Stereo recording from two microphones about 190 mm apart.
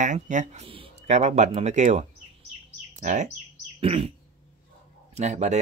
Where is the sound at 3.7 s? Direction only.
30° right (ahead or behind).